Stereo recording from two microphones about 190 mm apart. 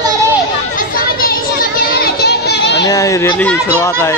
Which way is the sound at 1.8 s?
55° left (ahead or behind).